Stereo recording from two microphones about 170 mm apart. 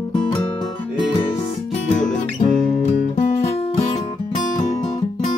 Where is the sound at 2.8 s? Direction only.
45° left (ahead or behind).